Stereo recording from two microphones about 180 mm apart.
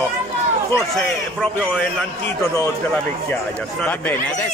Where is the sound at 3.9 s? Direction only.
10° left (ahead or behind).